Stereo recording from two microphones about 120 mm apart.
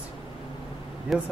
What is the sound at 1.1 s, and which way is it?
Speech, centre (ahead or behind).